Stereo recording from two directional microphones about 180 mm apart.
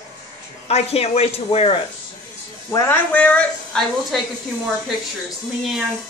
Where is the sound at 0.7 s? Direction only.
35° left (ahead or behind).